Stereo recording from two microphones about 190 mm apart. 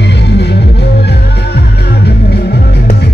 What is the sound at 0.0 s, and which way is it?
Music, 60° left (ahead or behind).